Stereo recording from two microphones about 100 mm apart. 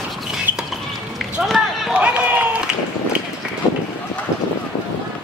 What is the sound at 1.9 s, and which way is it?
Run, 15° right (ahead or behind).